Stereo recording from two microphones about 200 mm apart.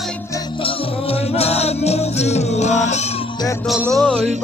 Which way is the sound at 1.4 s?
30° left (ahead or behind).